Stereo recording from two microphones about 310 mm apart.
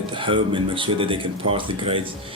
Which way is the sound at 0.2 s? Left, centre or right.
Centre.